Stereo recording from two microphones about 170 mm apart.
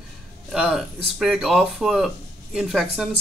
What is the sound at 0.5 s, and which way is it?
Speech, 5° right (ahead or behind).